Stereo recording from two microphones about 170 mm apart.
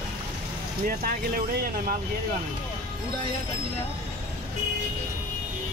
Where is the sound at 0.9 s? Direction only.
55° right (ahead or behind).